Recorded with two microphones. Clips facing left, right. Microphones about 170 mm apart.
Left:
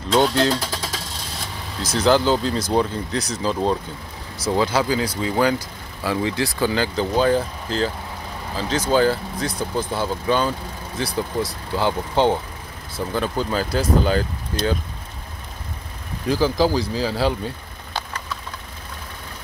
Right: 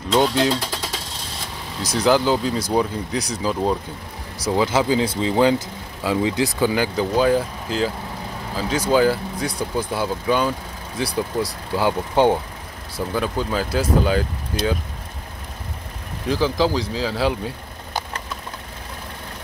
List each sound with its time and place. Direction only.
0.1 s speech: 10° right (ahead or behind)
1.9 s speech: 10° right (ahead or behind)
11.7 s speech: 10° right (ahead or behind)
16.3 s speech: centre (ahead or behind)